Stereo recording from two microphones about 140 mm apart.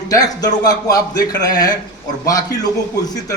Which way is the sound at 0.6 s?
25° left (ahead or behind).